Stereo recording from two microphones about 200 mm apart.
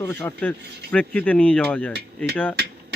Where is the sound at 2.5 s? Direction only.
55° right (ahead or behind).